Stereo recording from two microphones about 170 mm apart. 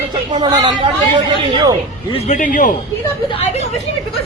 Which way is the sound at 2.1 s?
40° left (ahead or behind).